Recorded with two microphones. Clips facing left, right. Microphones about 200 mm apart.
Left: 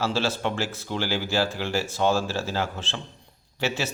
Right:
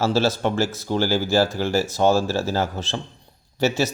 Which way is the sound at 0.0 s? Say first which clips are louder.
Right 5 dB; 40° right (ahead or behind).